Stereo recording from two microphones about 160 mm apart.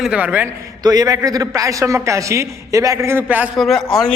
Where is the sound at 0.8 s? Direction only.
25° right (ahead or behind).